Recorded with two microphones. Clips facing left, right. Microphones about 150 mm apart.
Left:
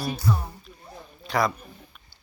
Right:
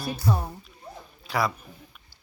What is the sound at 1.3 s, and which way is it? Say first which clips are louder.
Speech: left 2 dB; 5° right (ahead or behind).